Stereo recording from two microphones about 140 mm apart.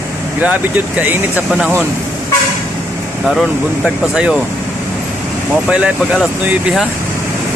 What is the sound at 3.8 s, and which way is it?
Speech, 5° right (ahead or behind).